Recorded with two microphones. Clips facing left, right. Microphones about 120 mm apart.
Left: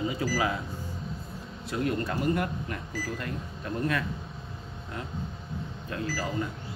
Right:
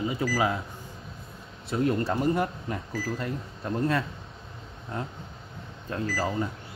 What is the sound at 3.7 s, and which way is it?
Speech, 30° right (ahead or behind).